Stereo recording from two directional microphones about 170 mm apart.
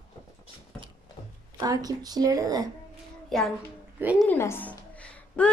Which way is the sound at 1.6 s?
20° right (ahead or behind).